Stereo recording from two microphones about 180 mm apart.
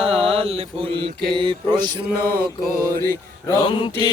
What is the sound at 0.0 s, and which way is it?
Mantra, 35° right (ahead or behind).